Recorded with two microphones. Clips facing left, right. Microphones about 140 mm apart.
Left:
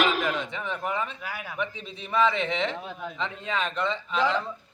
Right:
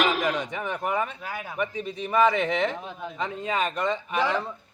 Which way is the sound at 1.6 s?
45° right (ahead or behind).